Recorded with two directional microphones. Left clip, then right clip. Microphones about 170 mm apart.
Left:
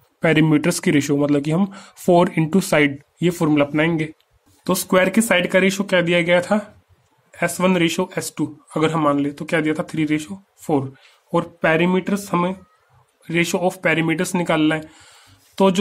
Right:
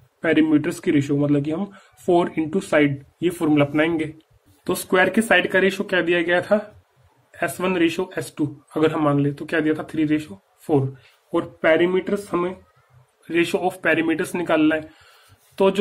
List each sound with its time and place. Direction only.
0.2 s a man's voice: 60° left (ahead or behind); by 4.1 s 40° left (ahead or behind)
4.6 s speech: 50° left (ahead or behind)
13.2 s speech: 40° left (ahead or behind)